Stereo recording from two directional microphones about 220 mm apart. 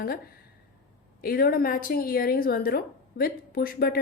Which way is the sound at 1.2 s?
40° left (ahead or behind).